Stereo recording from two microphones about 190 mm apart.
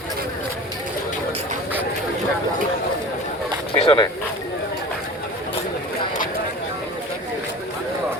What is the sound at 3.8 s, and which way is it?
Speech, 25° left (ahead or behind).